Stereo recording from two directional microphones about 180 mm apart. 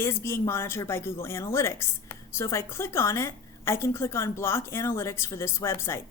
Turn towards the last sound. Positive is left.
turn(degrees=15)  # may be behind; listen again after turning